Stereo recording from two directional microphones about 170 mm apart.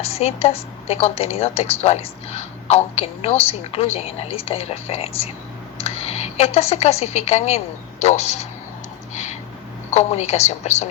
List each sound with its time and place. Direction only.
0.0 s a woman's voice: 35° left (ahead or behind)
9.9 s a woman's voice: 40° left (ahead or behind)